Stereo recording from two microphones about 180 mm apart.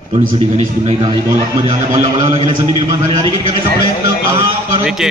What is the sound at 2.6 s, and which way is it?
Speech, 25° right (ahead or behind).